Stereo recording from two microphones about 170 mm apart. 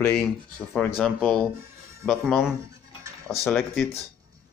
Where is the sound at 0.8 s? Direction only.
Centre (ahead or behind).